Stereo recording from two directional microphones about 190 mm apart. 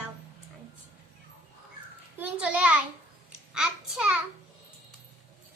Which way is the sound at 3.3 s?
5° right (ahead or behind).